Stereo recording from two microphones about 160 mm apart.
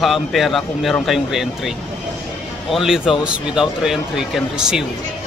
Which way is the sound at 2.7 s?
Centre (ahead or behind).